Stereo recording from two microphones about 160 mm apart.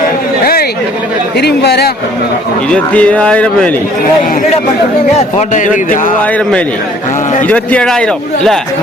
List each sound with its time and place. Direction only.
1.4 s speech: 90° left
2.6 s a man's voice: 10° left (ahead or behind)
5.1 s speech: 50° left (ahead or behind)
7.4 s a man's voice: 10° left (ahead or behind)